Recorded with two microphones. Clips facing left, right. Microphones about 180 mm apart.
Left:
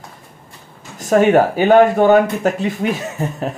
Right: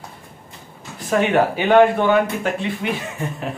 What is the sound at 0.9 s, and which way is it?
Speech, 45° left (ahead or behind).